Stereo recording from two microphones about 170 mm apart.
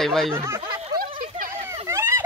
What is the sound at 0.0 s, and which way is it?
Speech, centre (ahead or behind).